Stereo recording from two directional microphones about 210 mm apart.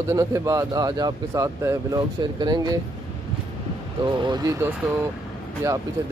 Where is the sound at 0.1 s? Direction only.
15° right (ahead or behind).